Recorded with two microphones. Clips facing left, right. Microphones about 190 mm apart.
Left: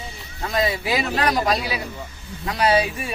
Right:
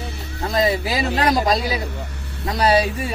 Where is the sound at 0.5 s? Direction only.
30° right (ahead or behind).